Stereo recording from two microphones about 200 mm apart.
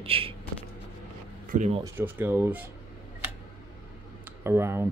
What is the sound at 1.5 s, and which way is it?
Speech, 35° right (ahead or behind).